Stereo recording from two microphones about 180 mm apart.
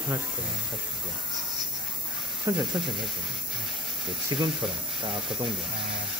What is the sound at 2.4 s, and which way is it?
Speech, 20° right (ahead or behind).